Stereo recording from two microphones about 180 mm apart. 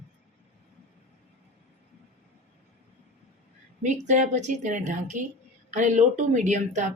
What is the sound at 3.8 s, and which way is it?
A woman's voice, 40° right (ahead or behind).